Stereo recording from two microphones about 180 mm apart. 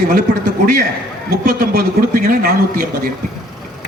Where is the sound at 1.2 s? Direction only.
55° right (ahead or behind).